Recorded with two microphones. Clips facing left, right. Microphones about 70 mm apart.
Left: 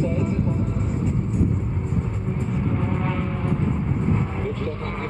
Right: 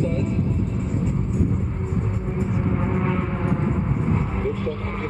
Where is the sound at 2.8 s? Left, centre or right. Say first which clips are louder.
Right 2 dB; centre.